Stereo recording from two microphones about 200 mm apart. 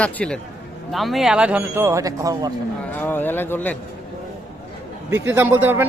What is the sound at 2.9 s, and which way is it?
Speech, 10° left (ahead or behind).